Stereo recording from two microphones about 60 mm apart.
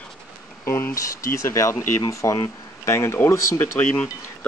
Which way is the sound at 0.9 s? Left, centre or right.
Left.